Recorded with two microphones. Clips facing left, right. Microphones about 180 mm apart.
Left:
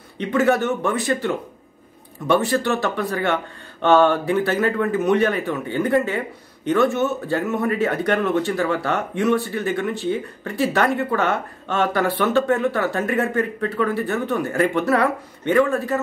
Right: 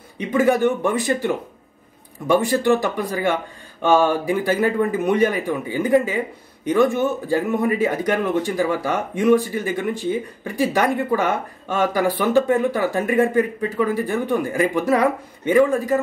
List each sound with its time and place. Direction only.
0.3 s speech: 10° right (ahead or behind)
7.2 s speech: 15° right (ahead or behind)